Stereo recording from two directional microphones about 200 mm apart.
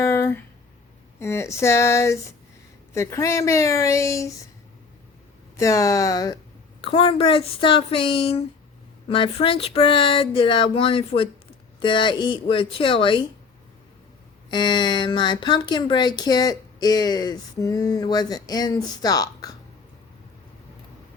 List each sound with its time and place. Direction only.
0.0 s a sound: 10° left (ahead or behind)
1.2 s a woman's voice: 15° left (ahead or behind)
5.5 s a woman's voice: 15° left (ahead or behind)
14.5 s speech: 20° left (ahead or behind)